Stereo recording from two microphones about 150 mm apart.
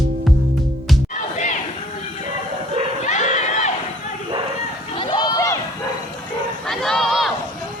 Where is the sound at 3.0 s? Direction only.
55° left (ahead or behind).